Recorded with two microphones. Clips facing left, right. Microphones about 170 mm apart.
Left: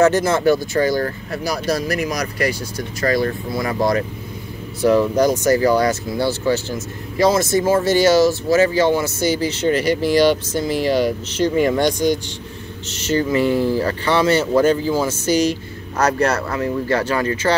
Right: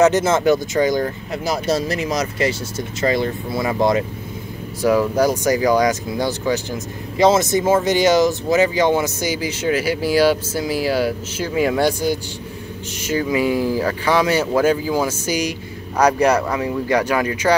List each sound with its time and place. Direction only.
0.0 s speech: 20° right (ahead or behind)
4.8 s speech: 10° right (ahead or behind)